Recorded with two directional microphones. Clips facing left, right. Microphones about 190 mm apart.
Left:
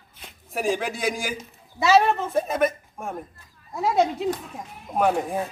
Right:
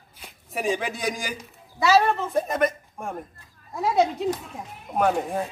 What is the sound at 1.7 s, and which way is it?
Speech, 20° left (ahead or behind).